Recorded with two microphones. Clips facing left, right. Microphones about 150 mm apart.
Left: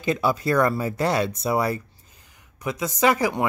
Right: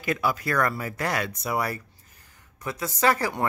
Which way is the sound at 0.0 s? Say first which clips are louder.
Left 4 dB; 25° left (ahead or behind).